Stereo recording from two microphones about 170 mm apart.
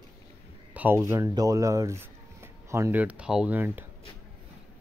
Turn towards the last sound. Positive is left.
turn(degrees=-10)  # may be behind; listen again after turning